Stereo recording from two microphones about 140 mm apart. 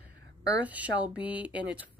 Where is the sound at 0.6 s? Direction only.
10° right (ahead or behind).